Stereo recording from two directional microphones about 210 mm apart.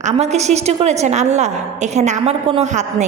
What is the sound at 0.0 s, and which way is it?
A woman's voice, 30° right (ahead or behind).